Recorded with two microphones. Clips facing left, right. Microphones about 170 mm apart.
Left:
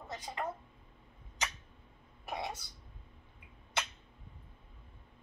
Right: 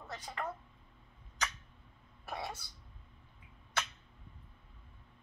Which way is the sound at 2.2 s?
15° left (ahead or behind).